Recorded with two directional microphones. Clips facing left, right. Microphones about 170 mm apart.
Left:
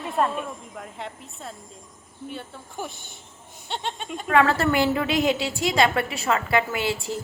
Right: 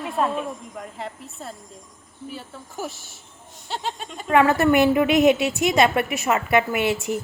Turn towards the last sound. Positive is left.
turn(degrees=-20)  # may be behind; listen again after turning